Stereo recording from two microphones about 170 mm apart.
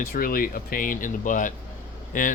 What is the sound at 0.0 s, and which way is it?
Speech, 60° left (ahead or behind).